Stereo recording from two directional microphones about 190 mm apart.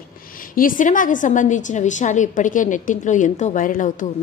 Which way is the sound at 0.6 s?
45° left (ahead or behind).